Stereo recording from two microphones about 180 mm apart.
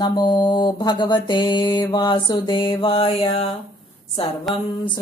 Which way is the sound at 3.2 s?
30° left (ahead or behind).